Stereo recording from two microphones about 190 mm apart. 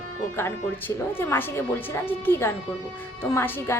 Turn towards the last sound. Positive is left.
turn(degrees=10)  # may be behind; listen again after turning